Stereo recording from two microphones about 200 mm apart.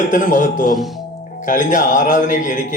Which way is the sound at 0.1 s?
40° left (ahead or behind).